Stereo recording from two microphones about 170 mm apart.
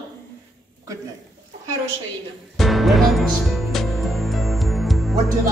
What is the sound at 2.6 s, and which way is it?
Music, centre (ahead or behind).